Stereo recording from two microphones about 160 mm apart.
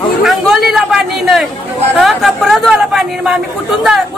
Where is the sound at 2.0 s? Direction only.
Centre (ahead or behind).